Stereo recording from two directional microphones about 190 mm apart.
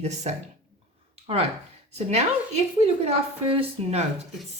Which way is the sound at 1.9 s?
35° right (ahead or behind).